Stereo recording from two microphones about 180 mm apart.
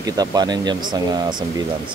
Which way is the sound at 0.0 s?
20° right (ahead or behind).